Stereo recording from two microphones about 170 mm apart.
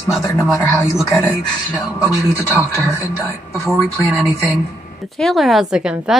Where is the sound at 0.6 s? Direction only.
15° left (ahead or behind).